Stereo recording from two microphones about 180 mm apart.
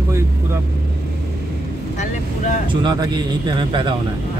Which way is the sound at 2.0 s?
45° left (ahead or behind).